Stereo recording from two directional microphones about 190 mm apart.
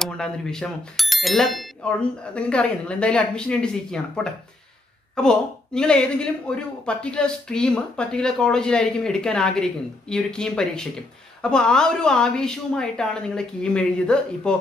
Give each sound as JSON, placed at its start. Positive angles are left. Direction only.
{"t": 0.0, "sound": "speech", "side_deg": 5}